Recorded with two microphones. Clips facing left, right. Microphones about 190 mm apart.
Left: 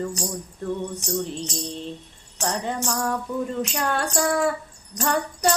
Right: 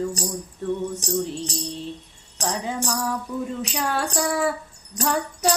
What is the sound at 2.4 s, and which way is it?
Music, centre (ahead or behind).